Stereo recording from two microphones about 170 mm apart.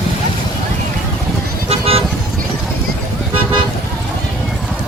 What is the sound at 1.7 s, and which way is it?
Vehicle, 35° right (ahead or behind).